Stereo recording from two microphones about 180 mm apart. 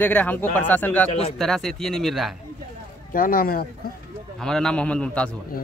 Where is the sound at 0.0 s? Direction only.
10° left (ahead or behind).